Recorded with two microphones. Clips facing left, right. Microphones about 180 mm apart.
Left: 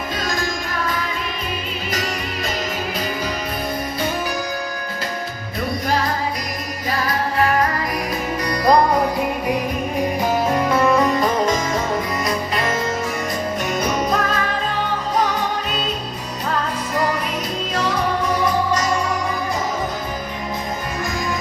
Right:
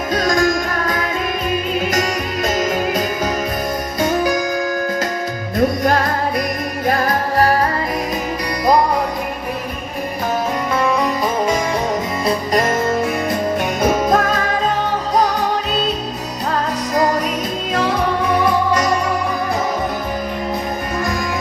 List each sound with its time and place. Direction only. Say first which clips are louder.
1.9 s music: right 6 dB; 45° right (ahead or behind)
5.5 s music: right 6 dB; 50° right (ahead or behind)
10.8 s music: even; centre (ahead or behind)
13.8 s music: right 7 dB; 50° right (ahead or behind)